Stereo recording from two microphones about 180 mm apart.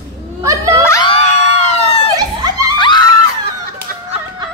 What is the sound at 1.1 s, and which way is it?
Screaming, 35° left (ahead or behind).